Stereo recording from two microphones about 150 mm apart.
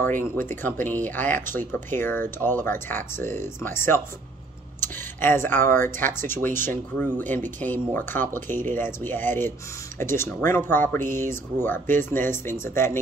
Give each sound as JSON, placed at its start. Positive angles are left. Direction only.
{"t": 0.0, "sound": "speech", "side_deg": 15}